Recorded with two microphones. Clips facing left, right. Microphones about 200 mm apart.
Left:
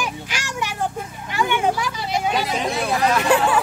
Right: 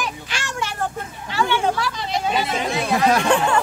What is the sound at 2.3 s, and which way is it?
Speech, centre (ahead or behind).